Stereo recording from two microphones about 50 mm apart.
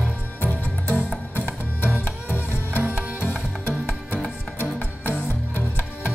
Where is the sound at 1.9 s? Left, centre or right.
Left.